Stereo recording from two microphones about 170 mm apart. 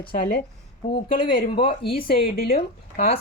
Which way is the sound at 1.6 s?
60° left (ahead or behind).